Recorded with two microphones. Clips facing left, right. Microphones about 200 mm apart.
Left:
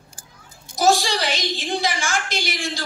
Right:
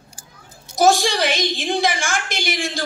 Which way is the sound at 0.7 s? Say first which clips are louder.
Right 3 dB; 50° right (ahead or behind).